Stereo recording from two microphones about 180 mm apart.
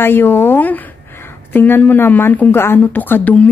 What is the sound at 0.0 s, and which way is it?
Speech, 10° left (ahead or behind).